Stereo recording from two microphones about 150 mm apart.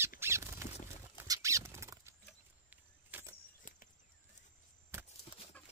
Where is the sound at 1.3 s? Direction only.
20° right (ahead or behind).